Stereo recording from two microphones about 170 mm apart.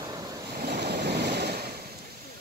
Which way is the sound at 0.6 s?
70° right (ahead or behind).